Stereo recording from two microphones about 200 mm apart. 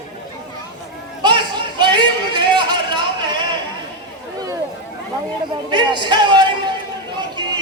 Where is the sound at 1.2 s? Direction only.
20° right (ahead or behind).